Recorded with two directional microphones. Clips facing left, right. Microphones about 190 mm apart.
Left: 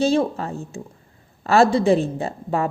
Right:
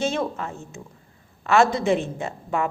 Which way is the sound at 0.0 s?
35° left (ahead or behind).